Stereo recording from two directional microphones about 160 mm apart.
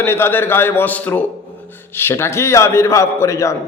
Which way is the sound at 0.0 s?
15° left (ahead or behind).